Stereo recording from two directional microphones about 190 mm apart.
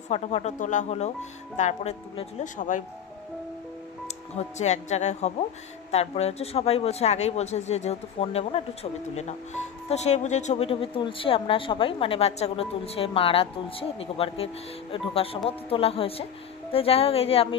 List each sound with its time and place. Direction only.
0.1 s a woman's voice: 35° left (ahead or behind)
4.4 s a woman's voice: 35° left (ahead or behind)
9.8 s a woman's voice: 35° left (ahead or behind)